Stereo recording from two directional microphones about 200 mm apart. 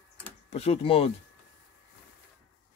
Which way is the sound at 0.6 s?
30° left (ahead or behind).